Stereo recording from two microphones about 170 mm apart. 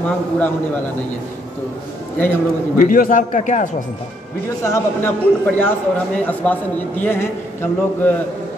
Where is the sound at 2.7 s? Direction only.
55° left (ahead or behind).